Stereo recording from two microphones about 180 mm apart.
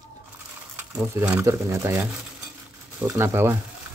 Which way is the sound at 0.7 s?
5° right (ahead or behind).